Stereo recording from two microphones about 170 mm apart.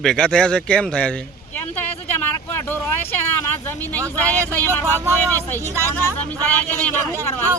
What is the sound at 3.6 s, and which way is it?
Speech, 10° left (ahead or behind).